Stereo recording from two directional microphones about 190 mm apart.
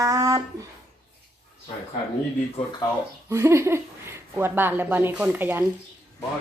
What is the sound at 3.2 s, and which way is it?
A woman's voice, 15° right (ahead or behind).